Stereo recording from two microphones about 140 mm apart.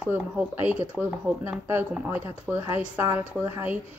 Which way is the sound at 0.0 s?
15° right (ahead or behind).